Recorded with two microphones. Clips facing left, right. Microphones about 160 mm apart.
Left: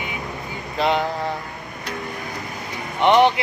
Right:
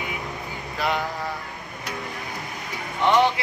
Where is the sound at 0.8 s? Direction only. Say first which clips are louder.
Left 5 dB; 25° left (ahead or behind).